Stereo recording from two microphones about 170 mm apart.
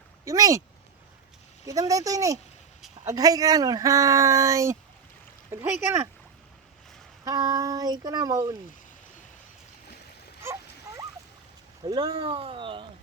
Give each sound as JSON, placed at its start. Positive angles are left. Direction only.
{"t": 0.3, "sound": "speech", "side_deg": -20}
{"t": 1.6, "sound": "speech", "side_deg": -20}
{"t": 7.3, "sound": "speech", "side_deg": -20}
{"t": 10.4, "sound": "goose", "side_deg": -15}
{"t": 11.9, "sound": "speech", "side_deg": -20}
{"t": 12.1, "sound": "speech", "side_deg": -35}